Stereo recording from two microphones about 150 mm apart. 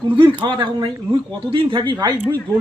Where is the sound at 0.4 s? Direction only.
30° right (ahead or behind).